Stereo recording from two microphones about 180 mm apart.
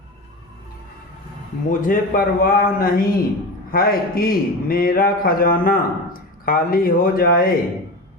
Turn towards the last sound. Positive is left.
turn(degrees=55)  # may be behind; listen again after turning